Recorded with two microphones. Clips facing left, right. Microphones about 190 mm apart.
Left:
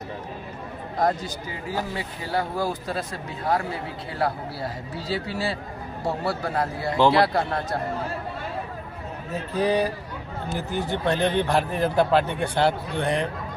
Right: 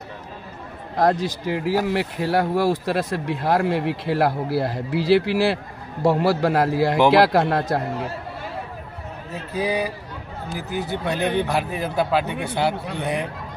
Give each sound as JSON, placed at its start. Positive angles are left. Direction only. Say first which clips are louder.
{"t": 0.9, "sound": "speech", "louder": "right 5 dB", "side_deg": -80}
{"t": 1.9, "sound": "speech", "louder": "right 8 dB", "side_deg": -75}
{"t": 9.6, "sound": "speech", "louder": "left 1 dB", "side_deg": -10}